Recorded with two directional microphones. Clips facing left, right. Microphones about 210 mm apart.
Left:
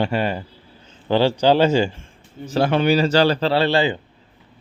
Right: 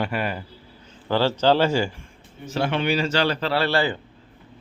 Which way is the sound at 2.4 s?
35° left (ahead or behind).